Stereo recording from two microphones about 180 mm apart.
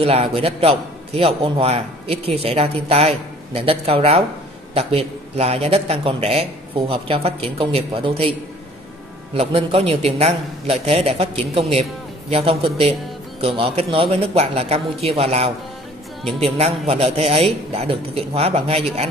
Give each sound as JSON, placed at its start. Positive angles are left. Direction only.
{"t": 0.0, "sound": "a man's voice", "side_deg": -30}